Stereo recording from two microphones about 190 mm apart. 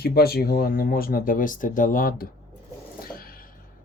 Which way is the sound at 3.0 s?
50° left (ahead or behind).